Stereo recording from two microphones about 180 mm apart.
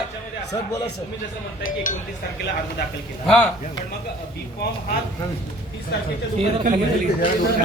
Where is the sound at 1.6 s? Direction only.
45° left (ahead or behind).